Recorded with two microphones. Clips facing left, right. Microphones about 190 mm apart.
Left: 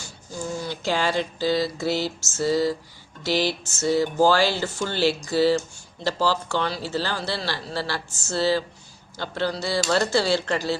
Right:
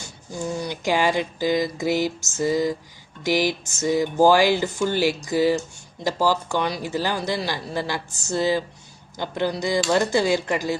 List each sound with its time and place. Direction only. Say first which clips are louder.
0.0 s speech: right 3 dB; 20° right (ahead or behind)